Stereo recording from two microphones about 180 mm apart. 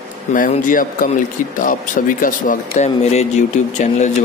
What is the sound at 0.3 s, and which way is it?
Speech, 50° left (ahead or behind).